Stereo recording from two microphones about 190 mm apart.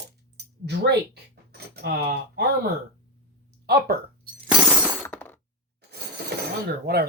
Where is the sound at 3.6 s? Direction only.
55° right (ahead or behind).